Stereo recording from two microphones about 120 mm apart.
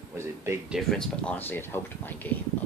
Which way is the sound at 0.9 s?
10° left (ahead or behind).